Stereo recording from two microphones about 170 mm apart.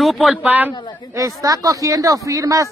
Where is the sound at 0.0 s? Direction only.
Centre (ahead or behind).